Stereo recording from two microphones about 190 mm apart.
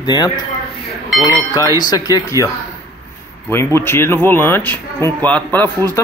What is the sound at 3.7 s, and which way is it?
Speech, 15° left (ahead or behind).